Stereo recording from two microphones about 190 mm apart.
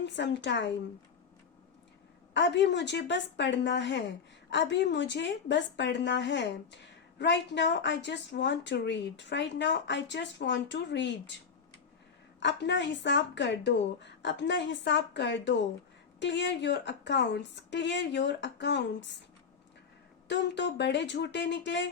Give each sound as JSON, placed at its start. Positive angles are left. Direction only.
{"t": 0.0, "sound": "a woman's voice", "side_deg": 65}
{"t": 2.3, "sound": "a woman's voice", "side_deg": 65}
{"t": 12.4, "sound": "a woman's voice", "side_deg": 70}
{"t": 20.2, "sound": "a woman's voice", "side_deg": 65}